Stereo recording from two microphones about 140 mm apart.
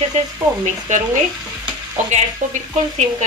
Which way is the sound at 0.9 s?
60° right (ahead or behind).